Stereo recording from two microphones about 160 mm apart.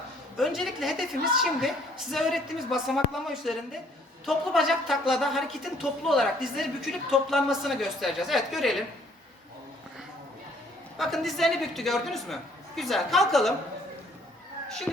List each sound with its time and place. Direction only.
0.3 s speech: centre (ahead or behind)
10.9 s speech: centre (ahead or behind)